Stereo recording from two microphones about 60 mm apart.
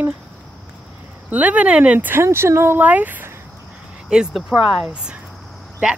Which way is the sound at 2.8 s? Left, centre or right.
Right.